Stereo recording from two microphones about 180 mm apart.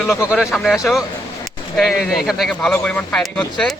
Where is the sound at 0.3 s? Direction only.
Centre (ahead or behind).